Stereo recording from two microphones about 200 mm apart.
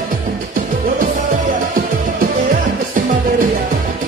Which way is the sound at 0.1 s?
45° right (ahead or behind).